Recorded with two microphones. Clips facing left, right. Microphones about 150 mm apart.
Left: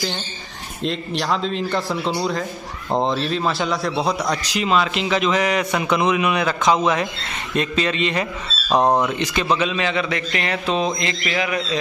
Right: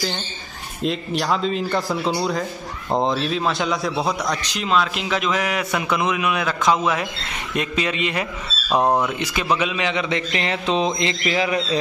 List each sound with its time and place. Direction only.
0.8 s a man's voice: centre (ahead or behind)
8.8 s speech: 15° left (ahead or behind)
9.2 s a man's voice: 10° right (ahead or behind); by 11.6 s 25° right (ahead or behind)